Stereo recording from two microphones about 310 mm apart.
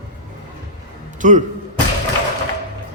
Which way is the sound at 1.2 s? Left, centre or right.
Right.